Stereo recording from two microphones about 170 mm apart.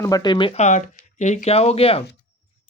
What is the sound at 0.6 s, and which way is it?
Speech, 45° left (ahead or behind).